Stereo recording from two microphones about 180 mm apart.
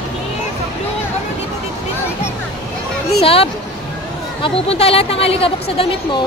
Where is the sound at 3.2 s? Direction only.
35° left (ahead or behind).